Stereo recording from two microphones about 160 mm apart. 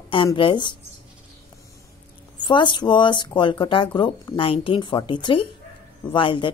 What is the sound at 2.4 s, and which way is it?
Speech, 30° left (ahead or behind).